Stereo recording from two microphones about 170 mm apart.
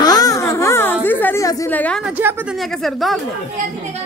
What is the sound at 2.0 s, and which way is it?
A woman's voice, 10° right (ahead or behind).